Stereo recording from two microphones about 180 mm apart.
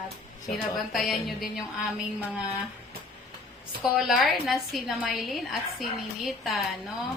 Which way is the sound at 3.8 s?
Centre (ahead or behind).